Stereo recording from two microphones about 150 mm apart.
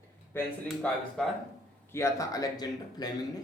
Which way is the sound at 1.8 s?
20° left (ahead or behind).